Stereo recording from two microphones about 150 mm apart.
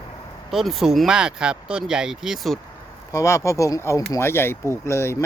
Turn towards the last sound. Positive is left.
turn(degrees=20)  # may be behind; listen again after turning